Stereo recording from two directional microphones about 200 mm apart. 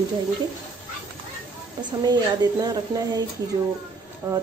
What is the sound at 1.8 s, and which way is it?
Speech, 20° right (ahead or behind).